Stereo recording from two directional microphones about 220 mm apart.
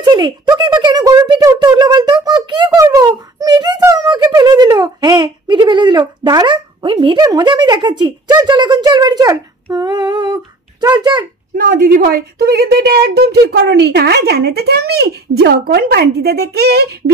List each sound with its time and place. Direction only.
0.0 s speech: 20° right (ahead or behind)
2.2 s a sound: 20° right (ahead or behind)
11.5 s a woman's voice: 40° right (ahead or behind)